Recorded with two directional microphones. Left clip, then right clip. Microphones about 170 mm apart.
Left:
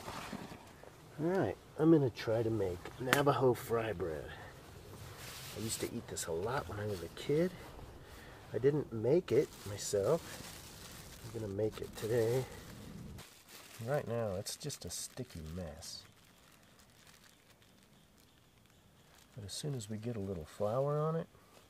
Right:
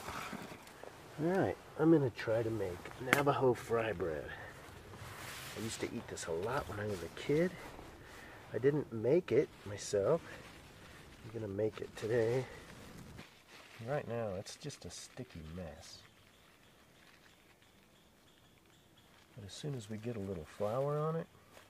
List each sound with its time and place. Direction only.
0.0 s a sound: 35° left (ahead or behind)
0.7 s speech: 20° left (ahead or behind)
5.1 s boat: 20° left (ahead or behind)
5.7 s speech: 40° left (ahead or behind)
11.3 s speech: 35° left (ahead or behind)
19.4 s speech: 40° left (ahead or behind)